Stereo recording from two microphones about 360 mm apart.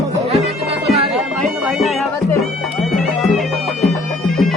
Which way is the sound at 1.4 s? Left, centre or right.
Centre.